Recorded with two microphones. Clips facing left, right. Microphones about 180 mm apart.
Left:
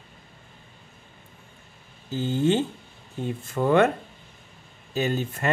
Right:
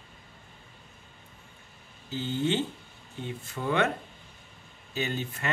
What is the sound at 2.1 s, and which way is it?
Speech, 45° left (ahead or behind).